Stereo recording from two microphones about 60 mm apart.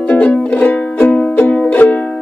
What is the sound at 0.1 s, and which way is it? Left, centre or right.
Music, centre.